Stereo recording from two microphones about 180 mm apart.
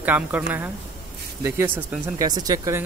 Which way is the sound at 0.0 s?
10° right (ahead or behind).